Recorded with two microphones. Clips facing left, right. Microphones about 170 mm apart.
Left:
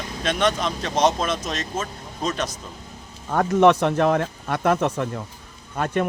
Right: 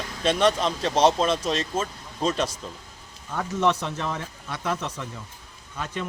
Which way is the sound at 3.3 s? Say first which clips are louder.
Left 8 dB; 60° left (ahead or behind).